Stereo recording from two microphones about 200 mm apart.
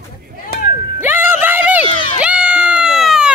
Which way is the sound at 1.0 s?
10° right (ahead or behind).